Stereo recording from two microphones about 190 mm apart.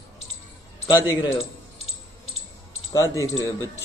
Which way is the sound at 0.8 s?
20° left (ahead or behind).